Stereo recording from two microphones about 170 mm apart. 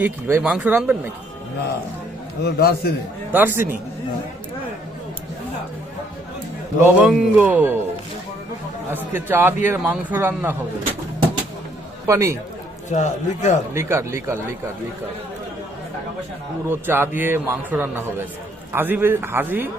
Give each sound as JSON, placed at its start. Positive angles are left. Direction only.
{"t": 0.0, "sound": "a man's voice", "side_deg": -10}
{"t": 2.4, "sound": "a man's voice", "side_deg": 70}
{"t": 3.3, "sound": "a man's voice", "side_deg": -10}
{"t": 6.8, "sound": "a man's voice", "side_deg": -5}
{"t": 9.1, "sound": "a man's voice", "side_deg": -10}
{"t": 12.0, "sound": "a man's voice", "side_deg": -20}
{"t": 12.9, "sound": "speech", "side_deg": 45}
{"t": 13.7, "sound": "a man's voice", "side_deg": -15}
{"t": 16.6, "sound": "a man's voice", "side_deg": -15}